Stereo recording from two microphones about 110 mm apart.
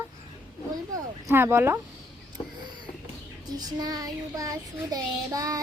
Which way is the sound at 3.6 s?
35° right (ahead or behind).